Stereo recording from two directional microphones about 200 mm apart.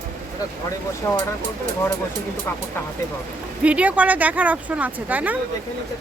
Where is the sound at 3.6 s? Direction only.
5° right (ahead or behind).